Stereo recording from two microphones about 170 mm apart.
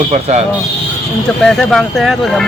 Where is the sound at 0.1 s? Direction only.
40° right (ahead or behind).